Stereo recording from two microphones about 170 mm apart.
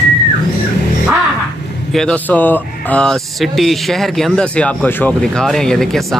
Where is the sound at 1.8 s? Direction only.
5° left (ahead or behind).